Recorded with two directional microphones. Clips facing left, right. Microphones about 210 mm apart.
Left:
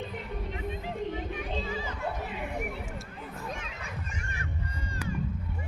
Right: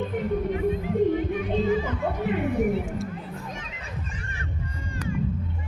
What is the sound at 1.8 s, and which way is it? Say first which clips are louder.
Music: right 8 dB; 60° right (ahead or behind).